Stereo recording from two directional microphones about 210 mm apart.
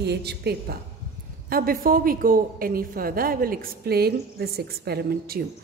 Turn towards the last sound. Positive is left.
turn(degrees=-45)  # may be behind; listen again after turning